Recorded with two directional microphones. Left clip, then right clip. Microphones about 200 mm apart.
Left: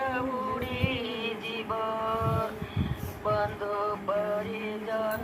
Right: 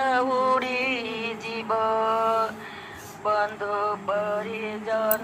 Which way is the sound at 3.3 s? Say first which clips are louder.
Right 4 dB; 15° right (ahead or behind).